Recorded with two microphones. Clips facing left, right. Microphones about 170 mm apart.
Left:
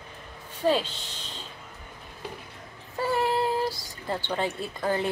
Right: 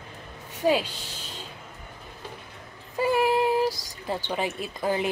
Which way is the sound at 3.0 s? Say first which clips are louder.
Right 3 dB; 10° right (ahead or behind).